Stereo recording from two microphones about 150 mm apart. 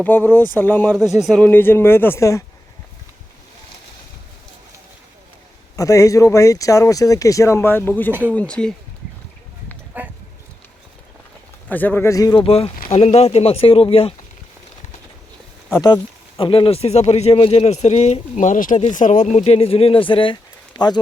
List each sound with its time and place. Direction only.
0.0 s speech: 10° left (ahead or behind)
0.9 s speech: centre (ahead or behind)
1.4 s speech: 15° left (ahead or behind)
5.7 s speech: 20° left (ahead or behind); by 8.7 s 5° left (ahead or behind)
10.0 s a sound: 10° right (ahead or behind)
11.7 s speech: 10° left (ahead or behind)
12.4 s speech: 40° left (ahead or behind)
15.7 s speech: 25° left (ahead or behind)
16.4 s speech: 35° left (ahead or behind)